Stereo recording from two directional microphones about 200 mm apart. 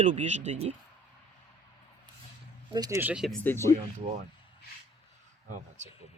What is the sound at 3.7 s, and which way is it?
Speech, 40° right (ahead or behind).